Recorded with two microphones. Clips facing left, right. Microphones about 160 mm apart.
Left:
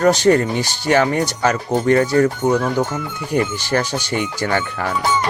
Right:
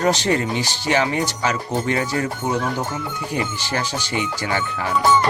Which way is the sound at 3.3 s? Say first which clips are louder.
Left 7 dB; 50° left (ahead or behind).